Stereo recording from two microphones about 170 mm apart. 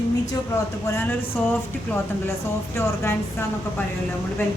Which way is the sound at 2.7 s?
15° left (ahead or behind).